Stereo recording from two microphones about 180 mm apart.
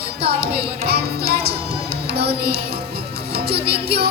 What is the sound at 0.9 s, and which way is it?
Music, 65° right (ahead or behind).